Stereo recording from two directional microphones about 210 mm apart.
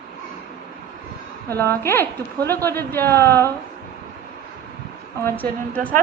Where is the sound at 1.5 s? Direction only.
10° left (ahead or behind).